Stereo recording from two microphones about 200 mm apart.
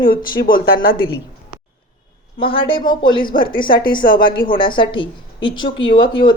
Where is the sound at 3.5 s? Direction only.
45° left (ahead or behind).